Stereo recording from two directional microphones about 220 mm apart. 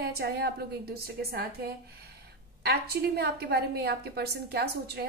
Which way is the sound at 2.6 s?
45° right (ahead or behind).